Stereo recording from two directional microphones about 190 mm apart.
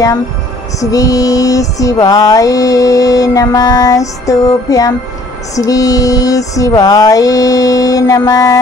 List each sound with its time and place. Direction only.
0.7 s music: 20° left (ahead or behind)